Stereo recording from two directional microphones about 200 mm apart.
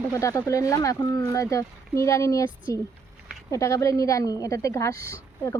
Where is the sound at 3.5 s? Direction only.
15° left (ahead or behind).